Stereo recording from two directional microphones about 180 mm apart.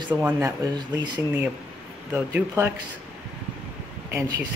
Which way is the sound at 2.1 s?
10° right (ahead or behind).